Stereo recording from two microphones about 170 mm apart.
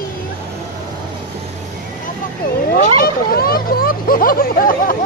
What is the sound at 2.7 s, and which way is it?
Speech, 60° left (ahead or behind).